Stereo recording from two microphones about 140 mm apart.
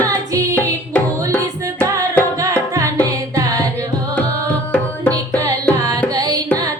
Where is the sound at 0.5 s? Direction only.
15° left (ahead or behind).